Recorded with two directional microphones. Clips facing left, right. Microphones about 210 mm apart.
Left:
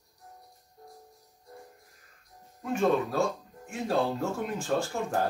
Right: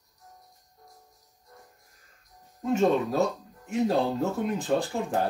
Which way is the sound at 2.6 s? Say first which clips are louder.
Right 3 dB; 20° right (ahead or behind).